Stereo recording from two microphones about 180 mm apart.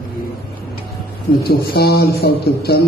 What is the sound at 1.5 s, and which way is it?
A man's voice, 60° left (ahead or behind).